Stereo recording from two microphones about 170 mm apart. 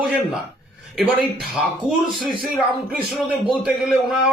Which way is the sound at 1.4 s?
Centre (ahead or behind).